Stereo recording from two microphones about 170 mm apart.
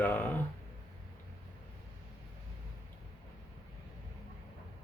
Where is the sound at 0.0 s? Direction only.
10° left (ahead or behind).